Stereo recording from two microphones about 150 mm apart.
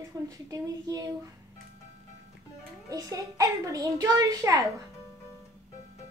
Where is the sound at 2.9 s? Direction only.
20° right (ahead or behind).